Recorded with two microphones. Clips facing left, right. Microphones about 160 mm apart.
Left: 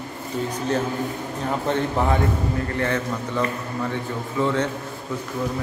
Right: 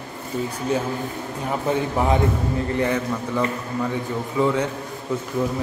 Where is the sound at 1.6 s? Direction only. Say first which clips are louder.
Right 2 dB; 10° right (ahead or behind).